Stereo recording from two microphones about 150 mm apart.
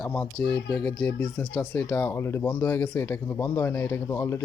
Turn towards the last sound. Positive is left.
turn(degrees=15)  # may be behind; listen again after turning